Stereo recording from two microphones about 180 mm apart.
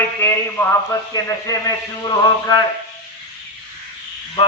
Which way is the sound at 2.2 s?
20° left (ahead or behind).